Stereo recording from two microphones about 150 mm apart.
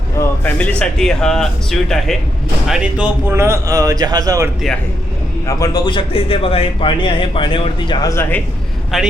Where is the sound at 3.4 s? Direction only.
20° right (ahead or behind).